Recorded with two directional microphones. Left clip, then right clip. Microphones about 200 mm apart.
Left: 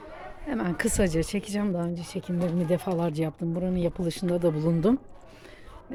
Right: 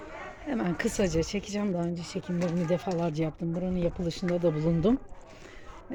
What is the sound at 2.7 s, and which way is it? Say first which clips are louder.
Speech: left 3 dB; 20° left (ahead or behind).